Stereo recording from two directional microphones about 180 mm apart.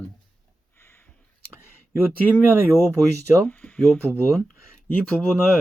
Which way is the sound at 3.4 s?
10° left (ahead or behind).